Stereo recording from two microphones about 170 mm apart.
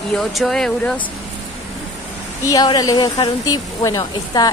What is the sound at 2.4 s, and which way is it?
Speech, 25° left (ahead or behind).